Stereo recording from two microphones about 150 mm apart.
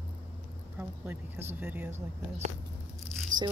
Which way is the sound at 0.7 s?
15° right (ahead or behind).